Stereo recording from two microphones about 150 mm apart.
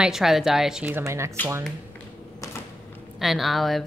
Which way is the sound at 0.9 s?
20° right (ahead or behind).